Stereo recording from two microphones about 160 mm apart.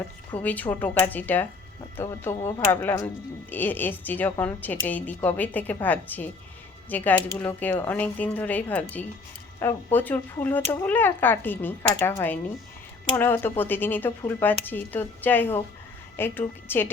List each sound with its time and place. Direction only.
0.4 s speech: 10° left (ahead or behind)
3.5 s speech: 10° left (ahead or behind)